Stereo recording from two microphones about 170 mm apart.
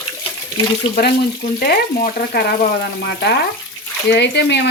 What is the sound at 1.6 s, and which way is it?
Frying, 60° left (ahead or behind).